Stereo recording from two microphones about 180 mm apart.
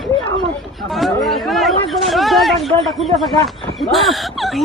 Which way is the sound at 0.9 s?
Centre (ahead or behind).